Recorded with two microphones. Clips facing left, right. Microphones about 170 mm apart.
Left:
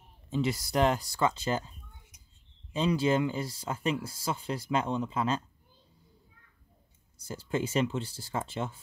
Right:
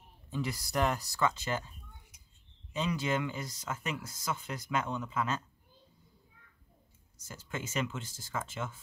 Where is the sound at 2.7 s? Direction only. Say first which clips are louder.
Left 6 dB; 30° left (ahead or behind).